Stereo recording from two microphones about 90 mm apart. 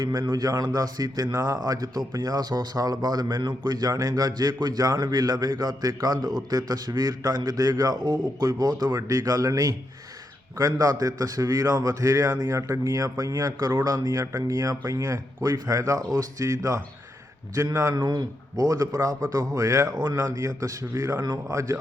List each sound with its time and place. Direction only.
0.0 s a man's voice: 45° right (ahead or behind)